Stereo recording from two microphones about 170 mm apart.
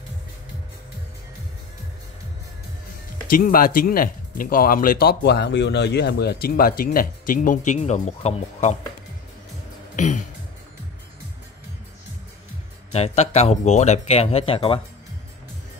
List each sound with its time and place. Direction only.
3.3 s speech: 55° left (ahead or behind)
9.9 s music: 45° left (ahead or behind)
12.9 s speech: 40° left (ahead or behind)